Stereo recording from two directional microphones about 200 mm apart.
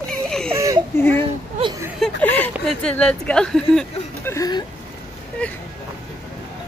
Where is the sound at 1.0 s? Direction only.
10° left (ahead or behind).